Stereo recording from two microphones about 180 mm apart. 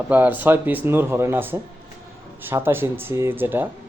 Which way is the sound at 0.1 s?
10° right (ahead or behind).